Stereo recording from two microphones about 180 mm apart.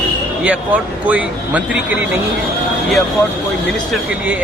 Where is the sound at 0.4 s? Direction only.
10° right (ahead or behind).